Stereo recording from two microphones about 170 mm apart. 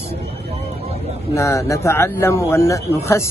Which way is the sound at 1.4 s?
15° left (ahead or behind).